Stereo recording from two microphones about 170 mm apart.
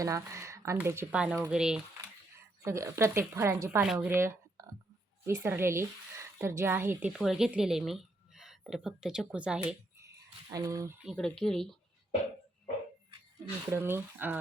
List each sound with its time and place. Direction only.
0.0 s speech: 20° right (ahead or behind)
2.6 s a woman's voice: 15° right (ahead or behind)
7.1 s a woman's voice: centre (ahead or behind)
10.5 s speech: 20° right (ahead or behind)
11.0 s speech: centre (ahead or behind)
13.7 s speech: 15° right (ahead or behind)